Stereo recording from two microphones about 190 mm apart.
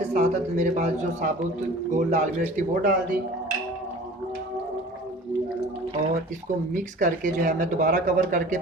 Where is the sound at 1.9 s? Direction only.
40° right (ahead or behind).